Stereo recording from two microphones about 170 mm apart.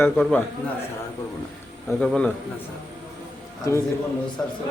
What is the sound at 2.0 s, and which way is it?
Speech, 5° left (ahead or behind).